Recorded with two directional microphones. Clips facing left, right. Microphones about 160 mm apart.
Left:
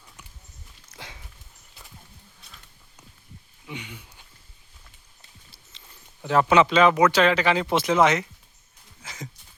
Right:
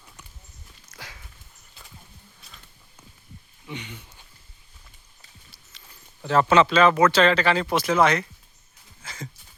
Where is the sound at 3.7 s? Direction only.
10° left (ahead or behind).